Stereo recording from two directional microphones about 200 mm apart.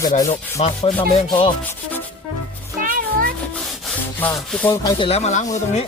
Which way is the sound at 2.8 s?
45° right (ahead or behind).